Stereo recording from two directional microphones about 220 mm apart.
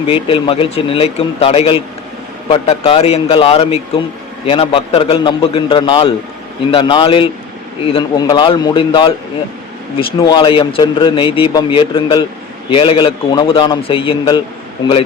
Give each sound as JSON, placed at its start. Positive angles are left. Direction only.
{"t": 0.1, "sound": "a man's voice", "side_deg": 25}
{"t": 10.2, "sound": "a man's voice", "side_deg": 20}